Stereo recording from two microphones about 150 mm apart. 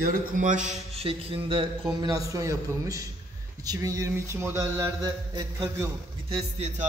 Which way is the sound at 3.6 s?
25° right (ahead or behind).